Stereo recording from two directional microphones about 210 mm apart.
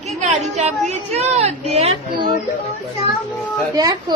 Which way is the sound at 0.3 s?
30° right (ahead or behind).